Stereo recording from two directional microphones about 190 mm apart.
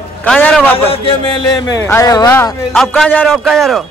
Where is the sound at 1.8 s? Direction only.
15° left (ahead or behind); by 3.8 s centre (ahead or behind).